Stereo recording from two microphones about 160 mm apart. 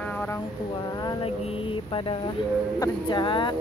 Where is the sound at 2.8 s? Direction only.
30° left (ahead or behind).